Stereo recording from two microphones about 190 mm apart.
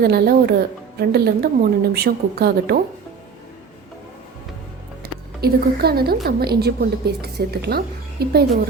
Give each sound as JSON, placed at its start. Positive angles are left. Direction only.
{"t": 0.0, "sound": "a woman's voice", "side_deg": -55}
{"t": 5.4, "sound": "a woman's voice", "side_deg": -55}